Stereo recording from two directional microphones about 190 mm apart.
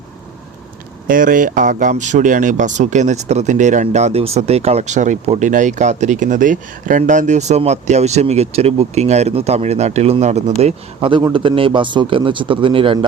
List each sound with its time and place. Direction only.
1.0 s a man's voice: 45° right (ahead or behind); by 13.1 s 30° right (ahead or behind)